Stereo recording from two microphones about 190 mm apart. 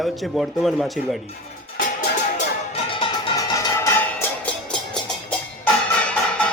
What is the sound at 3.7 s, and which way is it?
Music, 10° left (ahead or behind).